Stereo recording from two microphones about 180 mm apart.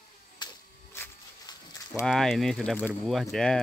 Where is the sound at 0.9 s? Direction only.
15° left (ahead or behind).